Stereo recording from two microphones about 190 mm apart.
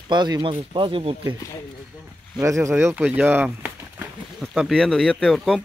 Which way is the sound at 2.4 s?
15° right (ahead or behind).